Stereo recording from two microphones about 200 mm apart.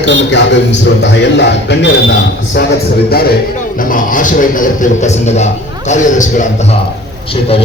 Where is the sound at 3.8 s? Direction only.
40° left (ahead or behind).